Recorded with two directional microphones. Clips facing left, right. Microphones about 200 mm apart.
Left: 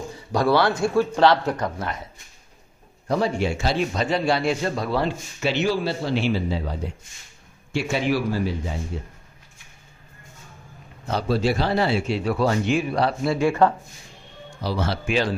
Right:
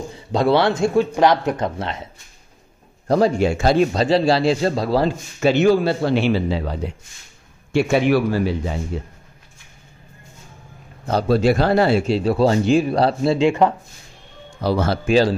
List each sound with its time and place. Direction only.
0.3 s speech: 25° right (ahead or behind)
3.1 s a man's voice: 40° right (ahead or behind); by 6.9 s 75° right (ahead or behind)
7.7 s a man's voice: 60° right (ahead or behind)
11.1 s speech: 45° right (ahead or behind); by 13.7 s 20° right (ahead or behind)
14.6 s a man's voice: 55° right (ahead or behind); by 15.3 s 35° right (ahead or behind)